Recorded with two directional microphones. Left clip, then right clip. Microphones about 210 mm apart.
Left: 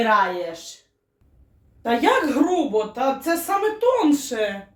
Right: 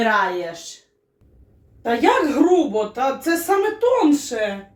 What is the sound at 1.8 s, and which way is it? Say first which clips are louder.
Speech: right 1 dB; 15° left (ahead or behind).